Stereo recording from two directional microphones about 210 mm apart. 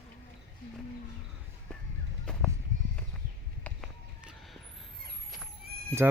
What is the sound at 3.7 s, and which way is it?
Run, centre (ahead or behind).